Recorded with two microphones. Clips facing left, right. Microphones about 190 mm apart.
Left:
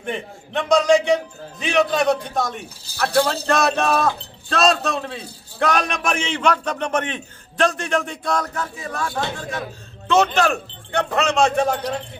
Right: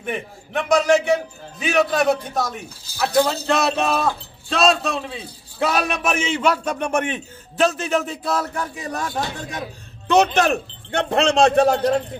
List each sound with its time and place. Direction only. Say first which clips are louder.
0.0 s a man's voice: even; 5° right (ahead or behind)
8.9 s speech: left 1 dB; 20° right (ahead or behind)